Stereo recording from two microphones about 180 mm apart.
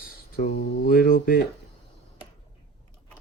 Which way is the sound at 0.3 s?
55° left (ahead or behind).